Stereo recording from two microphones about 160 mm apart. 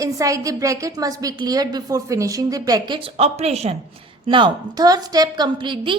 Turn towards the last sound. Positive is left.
turn(degrees=-30)  # may be behind; listen again after turning